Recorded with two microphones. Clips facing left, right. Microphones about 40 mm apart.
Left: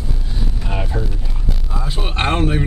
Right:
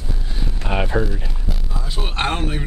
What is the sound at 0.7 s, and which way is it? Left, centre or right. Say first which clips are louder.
Speech: right 5 dB; right.